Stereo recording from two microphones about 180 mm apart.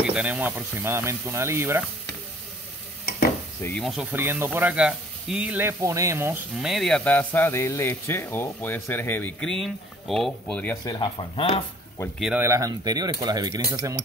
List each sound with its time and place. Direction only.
0.0 s speech: 5° right (ahead or behind)
3.6 s speech: centre (ahead or behind); by 6.4 s 15° right (ahead or behind)
6.5 s speech: centre (ahead or behind)
10.9 s speech: 25° left (ahead or behind)
12.2 s speech: centre (ahead or behind)
12.4 s speech: 20° right (ahead or behind)